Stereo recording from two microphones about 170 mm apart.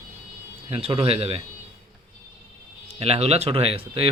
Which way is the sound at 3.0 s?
35° right (ahead or behind).